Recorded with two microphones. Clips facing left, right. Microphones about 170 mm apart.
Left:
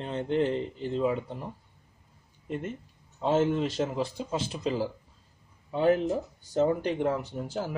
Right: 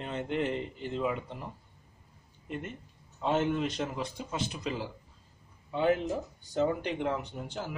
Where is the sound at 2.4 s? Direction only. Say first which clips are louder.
Left 5 dB; 35° left (ahead or behind).